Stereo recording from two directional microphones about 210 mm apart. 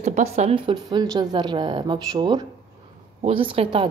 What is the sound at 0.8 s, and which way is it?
A woman's voice, 15° right (ahead or behind).